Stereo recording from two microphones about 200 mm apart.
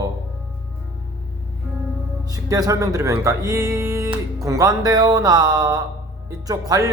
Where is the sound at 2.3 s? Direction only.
20° right (ahead or behind).